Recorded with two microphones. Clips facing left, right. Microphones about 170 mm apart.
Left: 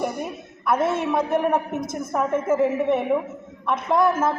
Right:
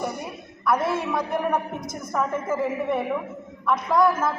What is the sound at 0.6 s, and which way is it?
A woman's voice, 25° left (ahead or behind).